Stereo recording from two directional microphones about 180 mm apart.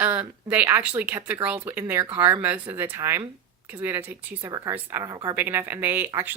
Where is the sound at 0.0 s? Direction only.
10° right (ahead or behind).